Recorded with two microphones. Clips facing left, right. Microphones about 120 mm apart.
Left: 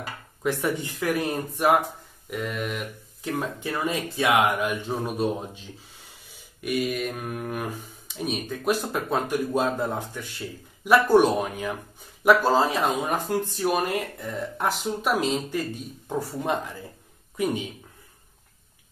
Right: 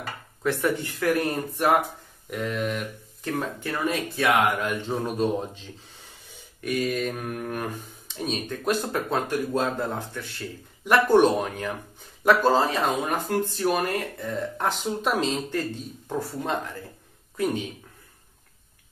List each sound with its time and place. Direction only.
0.0 s speech: 15° left (ahead or behind)
2.2 s mantra: 5° left (ahead or behind)
3.3 s speech: 15° left (ahead or behind)
14.6 s speech: 5° left (ahead or behind)